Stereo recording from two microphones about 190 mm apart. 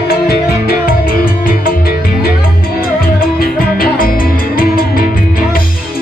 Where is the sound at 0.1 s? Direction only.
50° left (ahead or behind).